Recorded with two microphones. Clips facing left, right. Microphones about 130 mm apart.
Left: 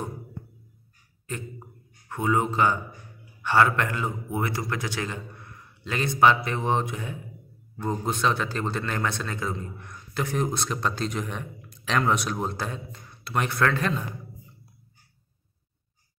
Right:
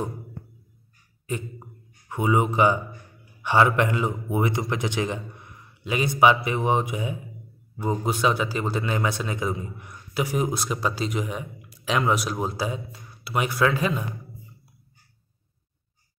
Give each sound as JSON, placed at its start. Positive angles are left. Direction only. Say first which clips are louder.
{"t": 1.2, "sound": "a man's voice", "louder": "right 4 dB", "side_deg": -15}